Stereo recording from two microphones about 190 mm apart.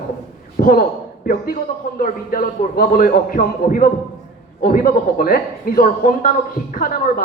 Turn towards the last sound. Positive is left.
turn(degrees=50)  # may be behind; listen again after turning